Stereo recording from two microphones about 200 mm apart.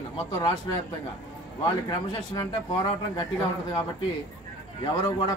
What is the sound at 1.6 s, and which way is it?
A man's voice, 20° left (ahead or behind).